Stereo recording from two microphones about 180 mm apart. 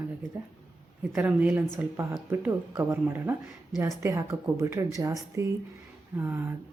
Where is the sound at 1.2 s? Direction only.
10° right (ahead or behind).